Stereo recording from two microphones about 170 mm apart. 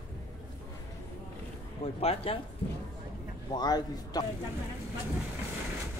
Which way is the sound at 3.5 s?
25° left (ahead or behind).